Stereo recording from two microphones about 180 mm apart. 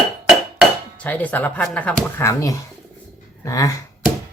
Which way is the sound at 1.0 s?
10° left (ahead or behind).